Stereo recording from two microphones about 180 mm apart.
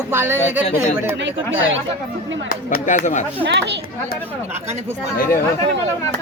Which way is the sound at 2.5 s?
50° left (ahead or behind).